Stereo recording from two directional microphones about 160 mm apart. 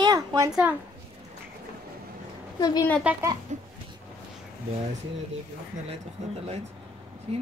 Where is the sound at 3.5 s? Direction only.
50° right (ahead or behind).